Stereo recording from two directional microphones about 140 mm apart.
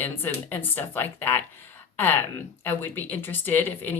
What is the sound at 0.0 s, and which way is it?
Speech, 15° left (ahead or behind).